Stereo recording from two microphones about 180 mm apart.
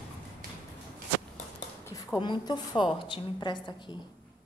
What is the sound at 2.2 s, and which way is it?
A woman's voice, 25° left (ahead or behind).